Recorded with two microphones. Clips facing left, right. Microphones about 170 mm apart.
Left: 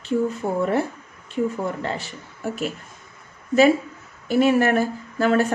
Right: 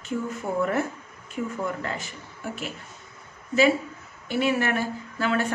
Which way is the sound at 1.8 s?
35° left (ahead or behind).